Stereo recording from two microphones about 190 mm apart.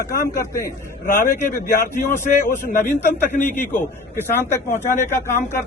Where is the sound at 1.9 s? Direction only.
15° left (ahead or behind).